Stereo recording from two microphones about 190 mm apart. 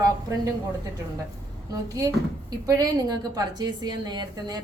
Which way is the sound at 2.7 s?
20° right (ahead or behind).